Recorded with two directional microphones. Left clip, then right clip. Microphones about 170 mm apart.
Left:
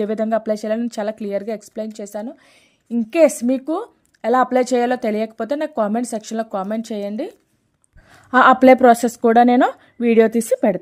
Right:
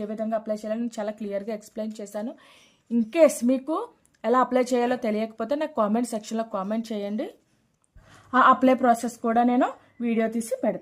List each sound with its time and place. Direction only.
0.0 s a woman's voice: 45° left (ahead or behind); by 7.1 s 25° left (ahead or behind)
8.1 s speech: 35° left (ahead or behind)